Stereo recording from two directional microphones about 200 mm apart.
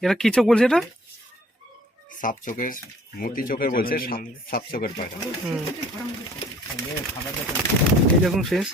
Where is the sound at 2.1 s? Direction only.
40° left (ahead or behind).